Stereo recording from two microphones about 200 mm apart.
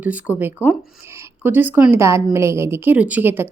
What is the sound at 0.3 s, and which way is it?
A woman's voice, 10° right (ahead or behind).